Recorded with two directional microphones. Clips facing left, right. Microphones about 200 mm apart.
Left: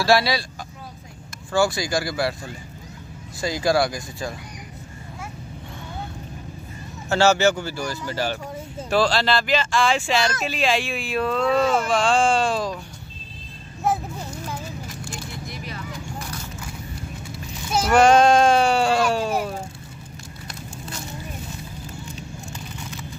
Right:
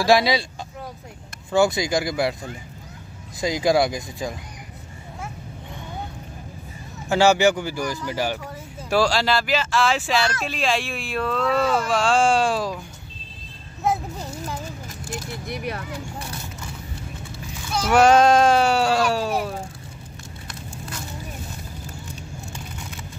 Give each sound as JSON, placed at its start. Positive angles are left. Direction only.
{"t": 0.0, "sound": "speech", "side_deg": -15}
{"t": 1.5, "sound": "speech", "side_deg": -20}
{"t": 7.1, "sound": "speech", "side_deg": -15}
{"t": 11.9, "sound": "speech", "side_deg": -5}
{"t": 15.4, "sound": "keys jangling", "side_deg": -60}
{"t": 17.8, "sound": "speech", "side_deg": -5}